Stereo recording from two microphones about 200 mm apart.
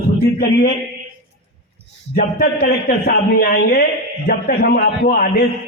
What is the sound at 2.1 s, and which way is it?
A man's voice, 50° left (ahead or behind).